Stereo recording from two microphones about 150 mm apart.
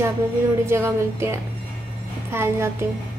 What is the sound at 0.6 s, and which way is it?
Speech, 15° right (ahead or behind).